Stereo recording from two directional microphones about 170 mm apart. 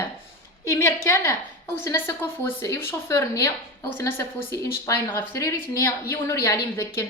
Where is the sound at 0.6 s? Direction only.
15° left (ahead or behind).